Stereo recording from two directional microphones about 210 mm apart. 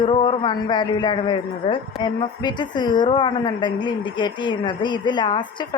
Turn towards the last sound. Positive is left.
turn(degrees=20)  # may be behind; listen again after turning